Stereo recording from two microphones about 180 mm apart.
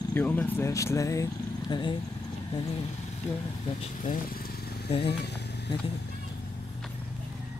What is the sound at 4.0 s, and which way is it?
Vehicle, 50° left (ahead or behind).